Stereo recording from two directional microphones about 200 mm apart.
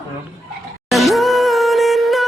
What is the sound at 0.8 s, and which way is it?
Music, centre (ahead or behind).